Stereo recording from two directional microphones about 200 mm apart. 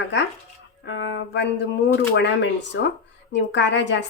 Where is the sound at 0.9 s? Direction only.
65° left (ahead or behind).